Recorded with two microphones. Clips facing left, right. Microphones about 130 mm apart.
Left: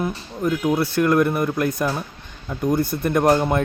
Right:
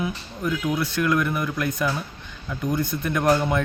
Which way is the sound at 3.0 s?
40° left (ahead or behind).